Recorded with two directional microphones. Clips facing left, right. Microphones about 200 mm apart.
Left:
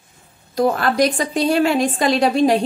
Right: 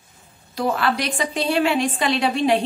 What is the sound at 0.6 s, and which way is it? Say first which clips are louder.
A woman's voice: left 6 dB; 45° left (ahead or behind).